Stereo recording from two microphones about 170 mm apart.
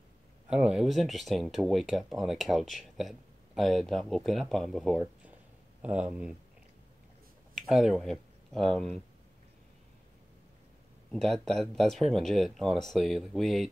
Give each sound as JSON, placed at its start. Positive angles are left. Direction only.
{"t": 0.5, "sound": "speech", "side_deg": -5}
{"t": 7.5, "sound": "speech", "side_deg": 0}
{"t": 11.1, "sound": "speech", "side_deg": 0}